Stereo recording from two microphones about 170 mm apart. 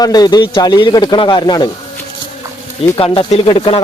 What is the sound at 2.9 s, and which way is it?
Speech, 30° left (ahead or behind).